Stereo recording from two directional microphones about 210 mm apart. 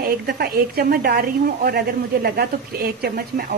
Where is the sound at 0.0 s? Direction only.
50° right (ahead or behind).